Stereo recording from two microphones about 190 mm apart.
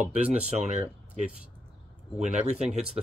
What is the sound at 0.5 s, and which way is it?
Speech, 35° right (ahead or behind).